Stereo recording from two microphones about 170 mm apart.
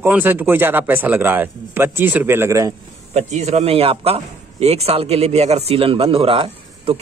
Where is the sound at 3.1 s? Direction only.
40° right (ahead or behind).